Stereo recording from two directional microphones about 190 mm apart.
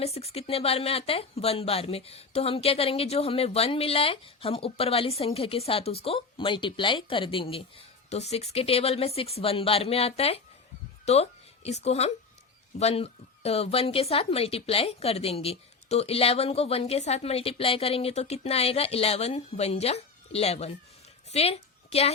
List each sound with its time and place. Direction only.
0.0 s a woman's voice: 35° left (ahead or behind)